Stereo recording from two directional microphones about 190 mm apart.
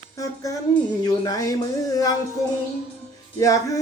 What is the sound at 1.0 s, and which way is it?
Speech, 20° left (ahead or behind).